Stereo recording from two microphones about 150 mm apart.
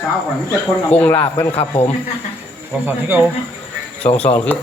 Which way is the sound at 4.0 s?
45° left (ahead or behind).